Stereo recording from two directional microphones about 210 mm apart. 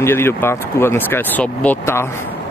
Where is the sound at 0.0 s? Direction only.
10° left (ahead or behind).